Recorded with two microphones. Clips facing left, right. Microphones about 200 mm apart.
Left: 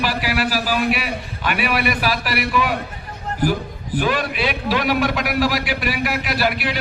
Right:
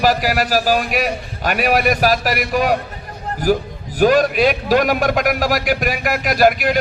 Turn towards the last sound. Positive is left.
turn(degrees=-45)  # may be behind; listen again after turning